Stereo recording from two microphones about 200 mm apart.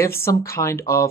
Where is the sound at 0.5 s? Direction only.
15° left (ahead or behind).